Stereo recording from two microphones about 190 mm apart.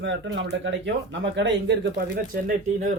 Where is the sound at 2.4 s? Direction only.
40° right (ahead or behind).